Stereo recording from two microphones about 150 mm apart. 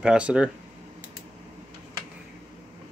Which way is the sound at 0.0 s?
5° right (ahead or behind).